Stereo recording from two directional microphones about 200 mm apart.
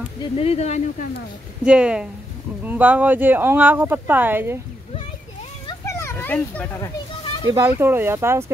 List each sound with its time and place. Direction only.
0.2 s speech: 30° left (ahead or behind)
1.6 s speech: 5° right (ahead or behind)
5.7 s children playing: 15° left (ahead or behind)
7.5 s speech: 10° right (ahead or behind)